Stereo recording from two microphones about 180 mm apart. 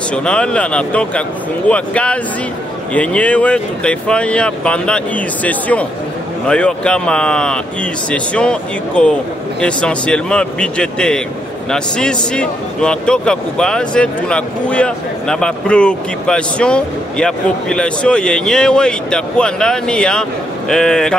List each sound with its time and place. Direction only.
0.1 s speech: 5° left (ahead or behind)